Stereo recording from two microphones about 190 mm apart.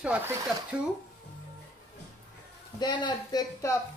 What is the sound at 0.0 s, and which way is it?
Speech, 10° right (ahead or behind).